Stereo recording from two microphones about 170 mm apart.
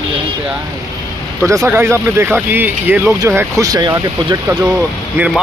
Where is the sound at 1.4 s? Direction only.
15° right (ahead or behind).